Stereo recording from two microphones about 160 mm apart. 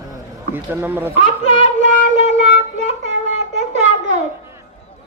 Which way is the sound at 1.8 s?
50° right (ahead or behind).